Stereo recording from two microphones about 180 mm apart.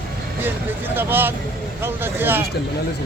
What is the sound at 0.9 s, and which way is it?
Speech, 10° right (ahead or behind).